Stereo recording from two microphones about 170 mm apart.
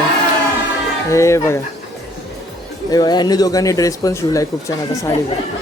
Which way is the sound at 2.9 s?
25° left (ahead or behind).